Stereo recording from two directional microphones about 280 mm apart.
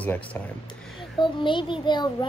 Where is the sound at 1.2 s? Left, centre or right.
Centre.